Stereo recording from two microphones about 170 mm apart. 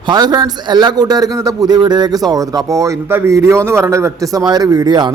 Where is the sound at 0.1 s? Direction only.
25° right (ahead or behind).